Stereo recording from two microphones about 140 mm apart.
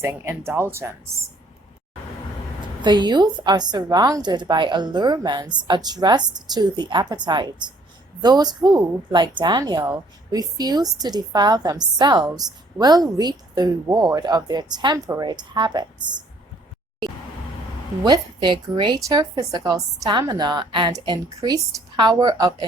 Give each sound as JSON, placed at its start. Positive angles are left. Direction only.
{"t": 0.0, "sound": "a woman's voice", "side_deg": -20}
{"t": 2.8, "sound": "a woman's voice", "side_deg": -30}
{"t": 18.0, "sound": "a woman's voice", "side_deg": -30}